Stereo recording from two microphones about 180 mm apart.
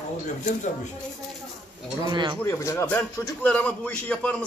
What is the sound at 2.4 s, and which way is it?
A man's voice, 15° left (ahead or behind).